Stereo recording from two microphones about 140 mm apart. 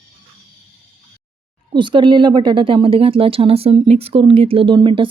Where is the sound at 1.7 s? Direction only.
35° right (ahead or behind).